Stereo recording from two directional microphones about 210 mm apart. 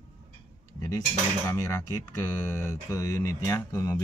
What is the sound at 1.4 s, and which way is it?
Speech, 15° left (ahead or behind).